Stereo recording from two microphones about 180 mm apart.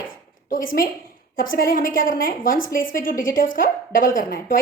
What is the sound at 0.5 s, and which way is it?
A woman's voice, 50° left (ahead or behind).